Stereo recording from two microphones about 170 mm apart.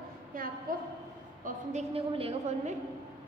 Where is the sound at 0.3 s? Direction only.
55° right (ahead or behind).